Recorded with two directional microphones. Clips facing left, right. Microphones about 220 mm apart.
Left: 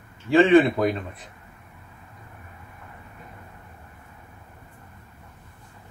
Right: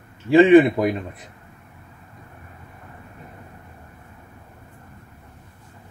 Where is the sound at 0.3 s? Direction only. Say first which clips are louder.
Right 4 dB; 15° right (ahead or behind).